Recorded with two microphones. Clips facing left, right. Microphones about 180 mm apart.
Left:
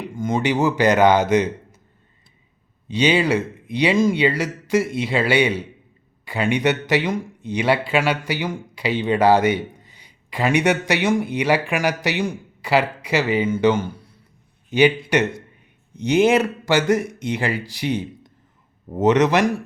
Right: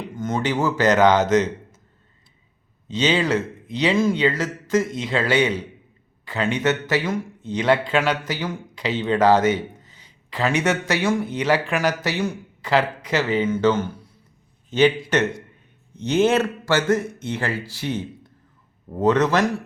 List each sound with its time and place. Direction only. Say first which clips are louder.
0.1 s a man's voice: left 3 dB; 10° left (ahead or behind)
2.9 s a man's voice: left 2 dB; 10° left (ahead or behind)
16.0 s speech: left 2 dB; 15° left (ahead or behind)